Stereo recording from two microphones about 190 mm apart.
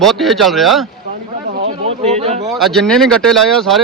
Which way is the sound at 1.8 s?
35° right (ahead or behind).